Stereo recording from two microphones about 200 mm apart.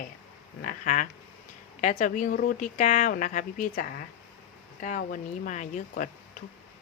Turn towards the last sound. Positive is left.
turn(degrees=40)  # may be behind; listen again after turning